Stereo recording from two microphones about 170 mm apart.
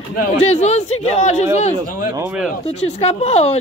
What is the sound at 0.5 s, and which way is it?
A woman's voice, 40° left (ahead or behind).